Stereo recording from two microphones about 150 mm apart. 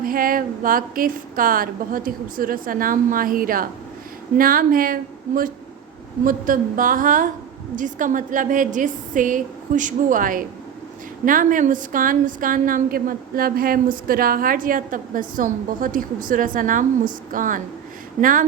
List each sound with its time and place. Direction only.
0.0 s a woman's voice: 70° right (ahead or behind)